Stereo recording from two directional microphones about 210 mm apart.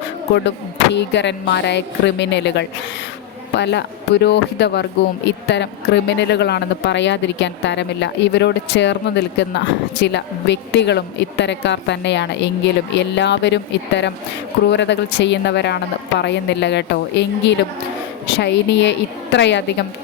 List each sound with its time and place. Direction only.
0.9 s speech: 55° left (ahead or behind)